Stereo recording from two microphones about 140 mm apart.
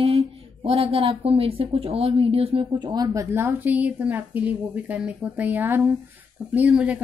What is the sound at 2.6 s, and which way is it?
Speech, 30° right (ahead or behind).